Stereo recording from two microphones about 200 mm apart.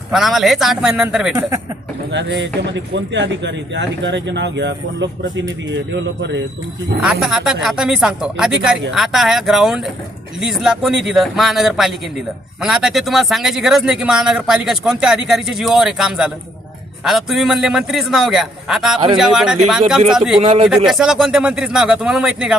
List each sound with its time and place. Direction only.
0.1 s speech: centre (ahead or behind)
2.1 s speech: 60° right (ahead or behind)
7.0 s speech: 5° right (ahead or behind)
20.4 s a man's voice: 30° right (ahead or behind)
20.7 s speech: centre (ahead or behind)